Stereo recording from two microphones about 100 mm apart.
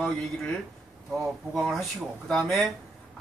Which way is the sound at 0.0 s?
5° left (ahead or behind).